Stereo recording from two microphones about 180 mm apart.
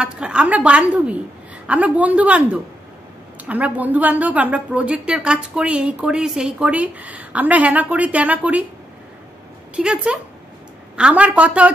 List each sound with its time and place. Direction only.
0.0 s a woman's voice: 5° right (ahead or behind)
9.8 s a woman's voice: 5° right (ahead or behind)